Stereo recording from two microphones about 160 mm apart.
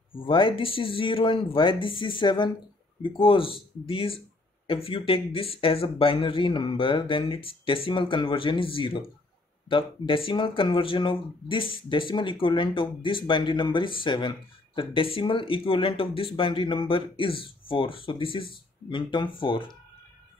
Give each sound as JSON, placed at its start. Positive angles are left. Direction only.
{"t": 0.2, "sound": "speech", "side_deg": 30}